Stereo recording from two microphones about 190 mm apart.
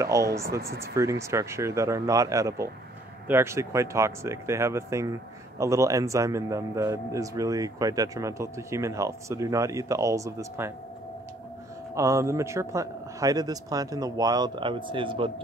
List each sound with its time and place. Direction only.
0.0 s speech: 15° right (ahead or behind)
11.9 s a man's voice: 15° right (ahead or behind)